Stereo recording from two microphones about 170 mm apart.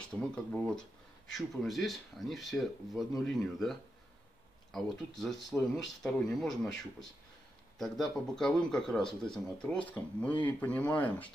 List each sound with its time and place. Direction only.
0.1 s speech: 5° left (ahead or behind)
4.7 s speech: centre (ahead or behind)